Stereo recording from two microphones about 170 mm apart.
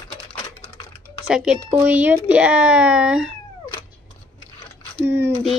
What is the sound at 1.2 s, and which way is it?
Speech, 5° right (ahead or behind).